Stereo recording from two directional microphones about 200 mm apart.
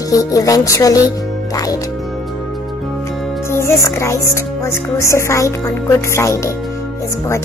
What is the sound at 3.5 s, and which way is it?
Music, 15° left (ahead or behind).